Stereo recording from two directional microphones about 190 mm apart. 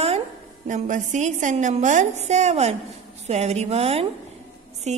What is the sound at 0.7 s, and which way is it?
A woman's voice, 40° right (ahead or behind).